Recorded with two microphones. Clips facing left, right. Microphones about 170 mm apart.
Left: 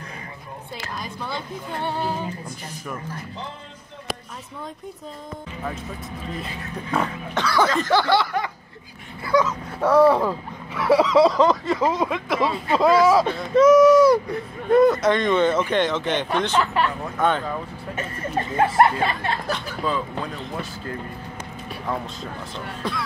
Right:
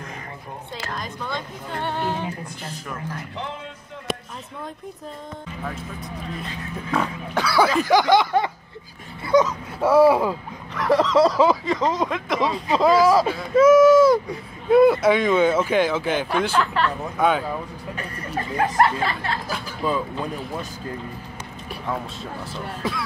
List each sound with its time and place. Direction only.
0.9 s a woman's voice: 5° left (ahead or behind)
7.3 s snicker: 10° right (ahead or behind)
9.2 s speech: 20° right (ahead or behind)
9.8 s snicker: 5° right (ahead or behind)
10.7 s speech: 5° left (ahead or behind)
16.5 s a woman's voice: 10° left (ahead or behind)
17.2 s snicker: 5° right (ahead or behind)
17.9 s speech: 20° left (ahead or behind)
19.5 s snicker: 10° right (ahead or behind)
21.8 s speech: centre (ahead or behind)